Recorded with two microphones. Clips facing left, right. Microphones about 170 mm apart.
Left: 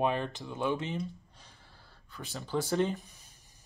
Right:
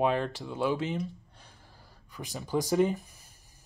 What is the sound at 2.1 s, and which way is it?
Speech, 15° right (ahead or behind).